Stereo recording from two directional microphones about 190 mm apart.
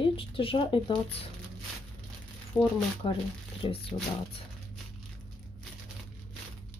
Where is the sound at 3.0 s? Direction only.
30° left (ahead or behind).